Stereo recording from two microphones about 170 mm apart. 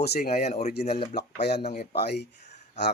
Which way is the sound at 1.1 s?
80° left.